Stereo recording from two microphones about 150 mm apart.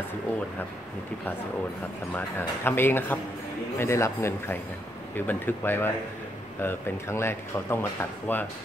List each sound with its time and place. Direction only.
2.1 s speech: 15° left (ahead or behind)